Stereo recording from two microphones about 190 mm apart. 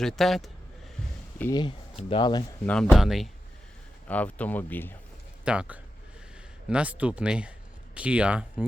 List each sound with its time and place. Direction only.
0.0 s speech: centre (ahead or behind)
1.4 s speech: 20° left (ahead or behind)
2.6 s speech: 5° left (ahead or behind)
5.5 s speech: 5° right (ahead or behind)